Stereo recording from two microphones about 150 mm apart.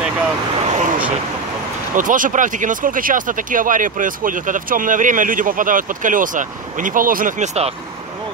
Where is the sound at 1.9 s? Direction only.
60° right (ahead or behind).